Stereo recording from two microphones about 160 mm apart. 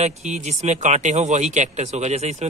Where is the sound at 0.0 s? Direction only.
45° right (ahead or behind).